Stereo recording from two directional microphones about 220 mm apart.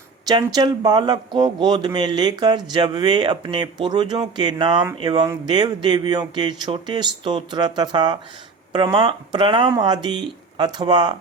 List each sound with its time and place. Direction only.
0.3 s speech: 20° right (ahead or behind)